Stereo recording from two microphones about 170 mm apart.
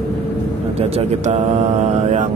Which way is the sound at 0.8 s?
40° right (ahead or behind).